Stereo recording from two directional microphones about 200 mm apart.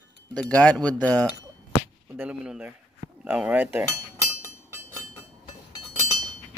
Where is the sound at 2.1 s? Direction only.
5° right (ahead or behind).